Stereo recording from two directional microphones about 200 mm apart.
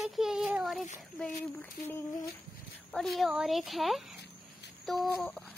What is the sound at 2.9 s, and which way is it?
Speech, centre (ahead or behind).